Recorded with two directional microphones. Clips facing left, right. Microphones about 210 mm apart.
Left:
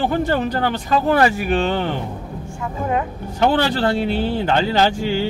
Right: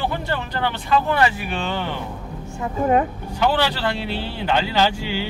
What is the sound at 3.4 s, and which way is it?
Speech, 50° left (ahead or behind).